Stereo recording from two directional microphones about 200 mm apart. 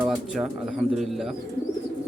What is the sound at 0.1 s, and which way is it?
Speech, centre (ahead or behind).